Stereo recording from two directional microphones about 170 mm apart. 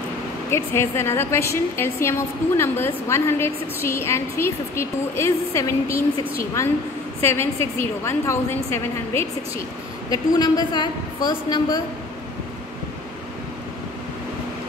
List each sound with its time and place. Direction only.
0.5 s a woman's voice: 15° left (ahead or behind)